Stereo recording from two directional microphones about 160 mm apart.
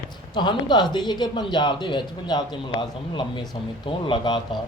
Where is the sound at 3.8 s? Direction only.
30° left (ahead or behind).